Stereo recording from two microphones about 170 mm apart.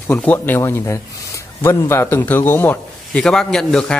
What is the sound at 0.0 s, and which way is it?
A man's voice, 10° left (ahead or behind).